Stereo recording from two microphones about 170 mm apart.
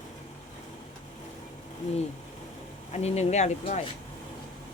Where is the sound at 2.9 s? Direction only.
40° left (ahead or behind).